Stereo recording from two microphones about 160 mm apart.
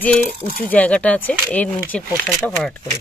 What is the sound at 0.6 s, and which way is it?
Speech, 10° left (ahead or behind).